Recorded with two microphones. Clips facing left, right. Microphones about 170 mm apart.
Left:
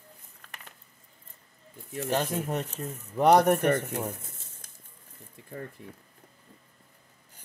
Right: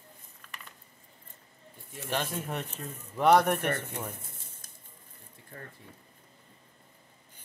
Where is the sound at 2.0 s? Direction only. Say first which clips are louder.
Left 5 dB; 40° left (ahead or behind).